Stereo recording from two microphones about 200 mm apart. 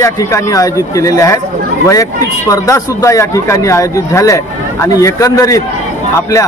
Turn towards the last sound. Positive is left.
turn(degrees=15)  # may be behind; listen again after turning